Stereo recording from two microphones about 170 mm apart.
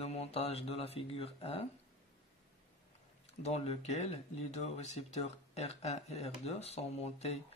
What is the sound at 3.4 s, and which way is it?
Speech, 40° left (ahead or behind).